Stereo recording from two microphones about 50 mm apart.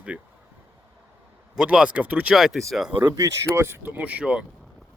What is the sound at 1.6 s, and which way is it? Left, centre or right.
Speech, centre.